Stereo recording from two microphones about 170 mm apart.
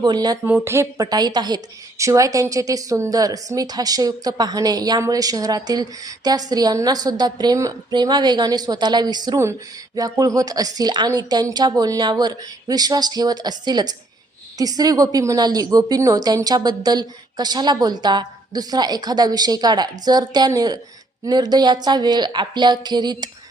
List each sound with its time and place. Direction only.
0.0 s a woman's voice: 25° right (ahead or behind)
0.4 s a woman's voice: 10° right (ahead or behind)